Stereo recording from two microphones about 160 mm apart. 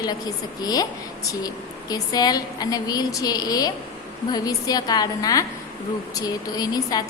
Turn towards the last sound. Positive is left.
turn(degrees=25)  # may be behind; listen again after turning